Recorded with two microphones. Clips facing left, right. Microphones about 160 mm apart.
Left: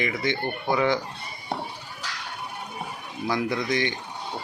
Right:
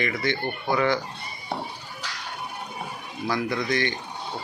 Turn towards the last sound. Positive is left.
turn(degrees=20)  # may be behind; listen again after turning